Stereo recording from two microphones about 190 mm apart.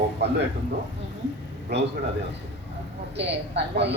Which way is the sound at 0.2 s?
65° right (ahead or behind).